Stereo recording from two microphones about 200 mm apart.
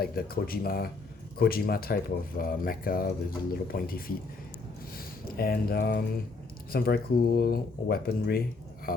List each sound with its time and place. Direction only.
0.0 s speech: 50° left (ahead or behind)